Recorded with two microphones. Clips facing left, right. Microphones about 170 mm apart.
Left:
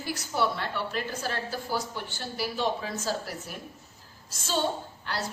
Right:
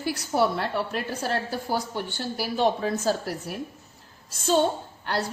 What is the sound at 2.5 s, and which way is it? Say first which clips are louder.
A woman's voice: right 8 dB; 55° right (ahead or behind).